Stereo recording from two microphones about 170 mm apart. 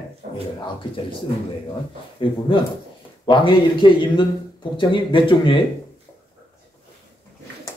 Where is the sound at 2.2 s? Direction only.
30° left (ahead or behind).